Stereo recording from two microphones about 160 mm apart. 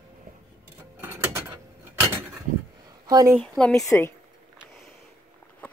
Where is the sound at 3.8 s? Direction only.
20° left (ahead or behind).